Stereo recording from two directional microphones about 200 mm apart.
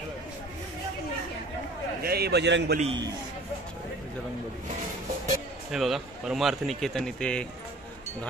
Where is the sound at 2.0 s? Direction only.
50° right (ahead or behind).